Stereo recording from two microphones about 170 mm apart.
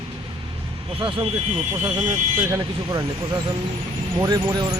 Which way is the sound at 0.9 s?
30° right (ahead or behind).